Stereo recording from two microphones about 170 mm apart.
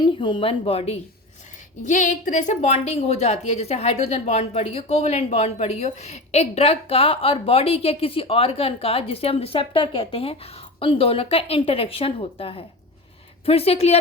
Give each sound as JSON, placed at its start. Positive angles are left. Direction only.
{"t": 0.0, "sound": "a woman's voice", "side_deg": 30}
{"t": 1.8, "sound": "a woman's voice", "side_deg": 50}